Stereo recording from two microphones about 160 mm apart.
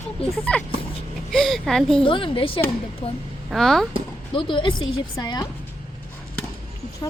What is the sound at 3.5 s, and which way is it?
Speech, centre (ahead or behind).